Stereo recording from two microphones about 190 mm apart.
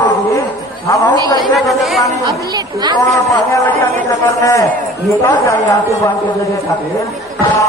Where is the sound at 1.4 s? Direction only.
Centre (ahead or behind).